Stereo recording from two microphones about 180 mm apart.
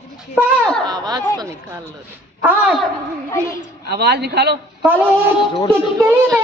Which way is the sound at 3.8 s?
65° right (ahead or behind).